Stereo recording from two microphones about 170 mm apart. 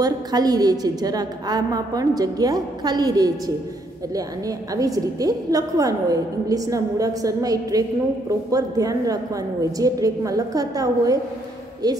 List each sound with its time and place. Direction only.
0.0 s a woman's voice: 20° right (ahead or behind)
4.7 s a woman's voice: 20° right (ahead or behind)